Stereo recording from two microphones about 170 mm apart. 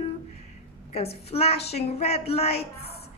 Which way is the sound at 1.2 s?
35° left (ahead or behind).